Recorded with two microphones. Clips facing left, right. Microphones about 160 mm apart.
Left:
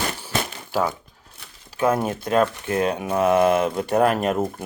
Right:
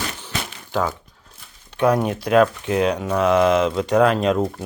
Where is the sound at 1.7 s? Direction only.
5° left (ahead or behind).